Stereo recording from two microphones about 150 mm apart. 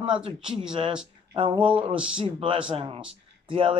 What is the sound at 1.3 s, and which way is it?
Speech, 35° right (ahead or behind).